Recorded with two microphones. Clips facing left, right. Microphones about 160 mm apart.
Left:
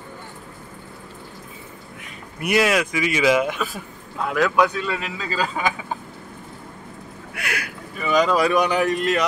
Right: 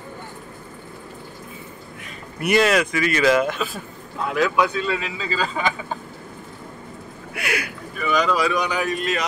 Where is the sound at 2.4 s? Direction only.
5° left (ahead or behind).